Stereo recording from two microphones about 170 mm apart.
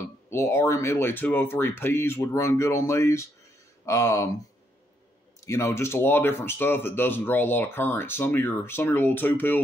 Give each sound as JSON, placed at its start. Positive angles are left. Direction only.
{"t": 0.3, "sound": "speech", "side_deg": 15}
{"t": 5.4, "sound": "speech", "side_deg": 15}